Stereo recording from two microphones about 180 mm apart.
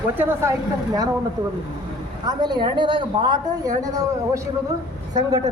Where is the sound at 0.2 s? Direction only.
10° right (ahead or behind).